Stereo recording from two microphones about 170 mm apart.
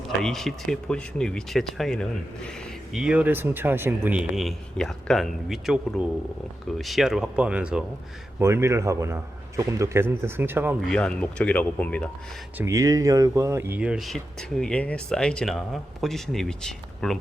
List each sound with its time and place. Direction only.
0.2 s speech: 5° left (ahead or behind)
8.4 s a man's voice: 15° right (ahead or behind)
10.8 s speech: 5° left (ahead or behind)
12.5 s speech: 20° right (ahead or behind); by 17.2 s 5° left (ahead or behind)